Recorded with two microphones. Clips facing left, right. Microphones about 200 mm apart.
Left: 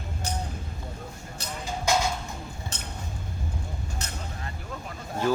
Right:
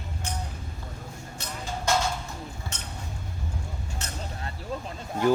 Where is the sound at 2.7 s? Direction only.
35° left (ahead or behind).